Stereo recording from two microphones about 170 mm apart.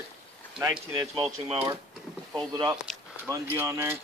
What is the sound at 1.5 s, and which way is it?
Speech, 30° right (ahead or behind).